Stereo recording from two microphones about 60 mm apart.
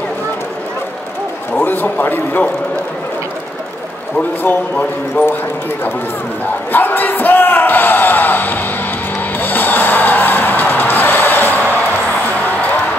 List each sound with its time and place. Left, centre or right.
1.6 s a man's voice: left
4.2 s a man's voice: left
6.7 s a sound: left
9.4 s music: left